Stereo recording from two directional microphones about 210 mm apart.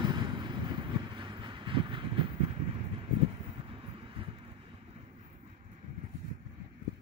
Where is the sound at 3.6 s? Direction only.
25° right (ahead or behind).